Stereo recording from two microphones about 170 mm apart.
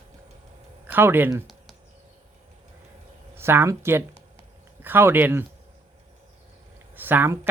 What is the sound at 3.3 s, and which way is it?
Speech, 15° right (ahead or behind).